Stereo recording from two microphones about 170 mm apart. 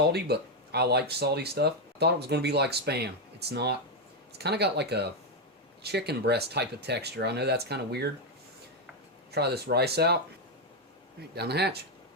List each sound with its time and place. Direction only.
0.1 s speech: 70° right (ahead or behind)
9.3 s speech: 70° right (ahead or behind)
11.3 s speech: 75° right (ahead or behind)